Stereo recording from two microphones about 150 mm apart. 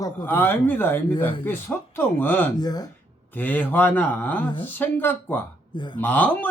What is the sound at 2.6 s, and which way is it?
Speech, 25° left (ahead or behind).